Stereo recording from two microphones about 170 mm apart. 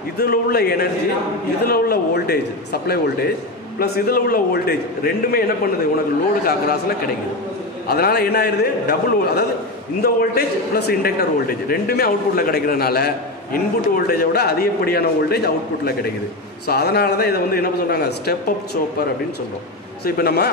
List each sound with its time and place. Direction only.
0.2 s a man's voice: 65° left (ahead or behind)
7.9 s a man's voice: 65° left (ahead or behind)
20.1 s a man's voice: 70° left (ahead or behind)